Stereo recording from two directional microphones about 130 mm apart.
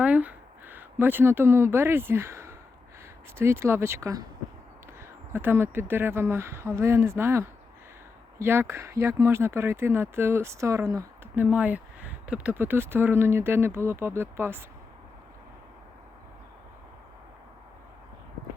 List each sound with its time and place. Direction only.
0.0 s speech: 10° right (ahead or behind)
5.3 s speech: 15° right (ahead or behind)
11.3 s speech: 10° right (ahead or behind)